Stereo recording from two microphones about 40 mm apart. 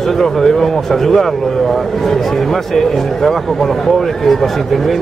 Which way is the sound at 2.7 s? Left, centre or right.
Centre.